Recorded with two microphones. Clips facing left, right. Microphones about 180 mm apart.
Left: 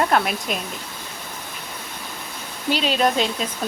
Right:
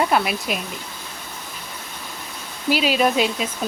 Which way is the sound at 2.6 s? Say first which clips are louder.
Right 1 dB; 10° right (ahead or behind).